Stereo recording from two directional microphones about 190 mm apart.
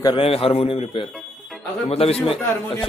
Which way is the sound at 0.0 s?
25° left (ahead or behind).